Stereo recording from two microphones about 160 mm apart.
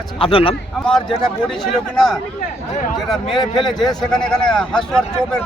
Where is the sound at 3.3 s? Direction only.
25° left (ahead or behind).